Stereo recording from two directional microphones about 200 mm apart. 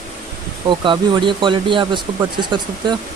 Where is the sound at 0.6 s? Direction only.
25° right (ahead or behind).